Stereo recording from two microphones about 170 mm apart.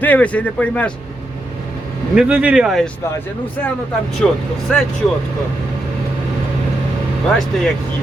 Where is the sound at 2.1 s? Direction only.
5° right (ahead or behind).